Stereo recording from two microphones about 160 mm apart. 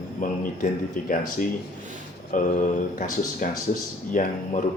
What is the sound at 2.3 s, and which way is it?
Speech, 55° left (ahead or behind).